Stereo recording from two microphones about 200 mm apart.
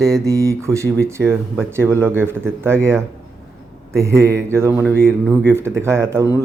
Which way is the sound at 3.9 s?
15° right (ahead or behind).